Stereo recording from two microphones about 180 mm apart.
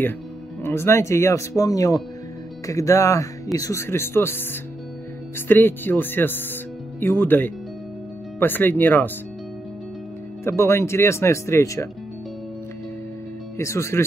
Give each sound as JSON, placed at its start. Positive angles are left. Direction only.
{"t": 0.7, "sound": "speech", "side_deg": 15}
{"t": 5.5, "sound": "speech", "side_deg": 10}
{"t": 10.4, "sound": "speech", "side_deg": 15}
{"t": 13.6, "sound": "speech", "side_deg": 15}